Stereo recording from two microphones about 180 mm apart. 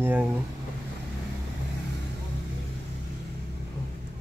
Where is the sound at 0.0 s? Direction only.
10° right (ahead or behind).